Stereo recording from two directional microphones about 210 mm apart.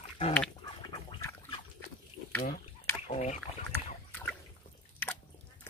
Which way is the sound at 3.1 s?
30° left (ahead or behind).